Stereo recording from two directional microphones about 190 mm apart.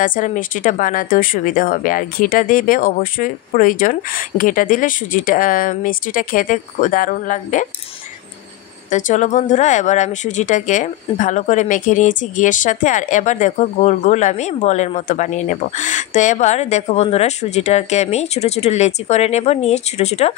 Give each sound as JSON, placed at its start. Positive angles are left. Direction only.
{"t": 0.0, "sound": "speech", "side_deg": 45}
{"t": 8.9, "sound": "speech", "side_deg": 40}